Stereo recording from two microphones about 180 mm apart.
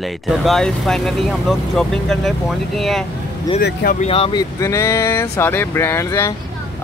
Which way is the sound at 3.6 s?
60° left (ahead or behind).